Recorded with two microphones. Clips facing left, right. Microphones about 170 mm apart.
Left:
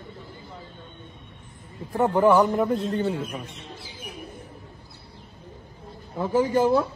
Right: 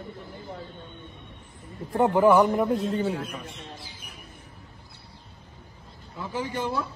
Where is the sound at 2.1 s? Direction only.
5° right (ahead or behind).